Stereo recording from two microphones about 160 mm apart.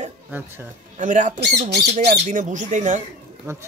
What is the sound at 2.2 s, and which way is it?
Speech, 50° right (ahead or behind).